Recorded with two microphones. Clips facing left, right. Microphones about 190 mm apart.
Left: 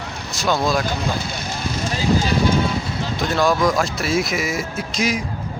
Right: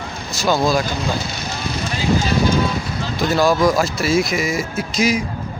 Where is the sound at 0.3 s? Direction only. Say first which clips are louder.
Right 2 dB; centre (ahead or behind).